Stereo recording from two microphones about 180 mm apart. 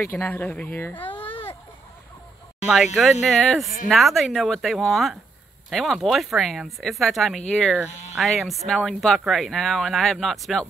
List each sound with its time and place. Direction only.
0.0 s speech: 10° left (ahead or behind)
1.1 s baby cry: 30° left (ahead or behind)
2.7 s speech: centre (ahead or behind)